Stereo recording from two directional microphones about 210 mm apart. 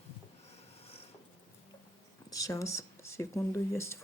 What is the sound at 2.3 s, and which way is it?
Speech, 15° left (ahead or behind).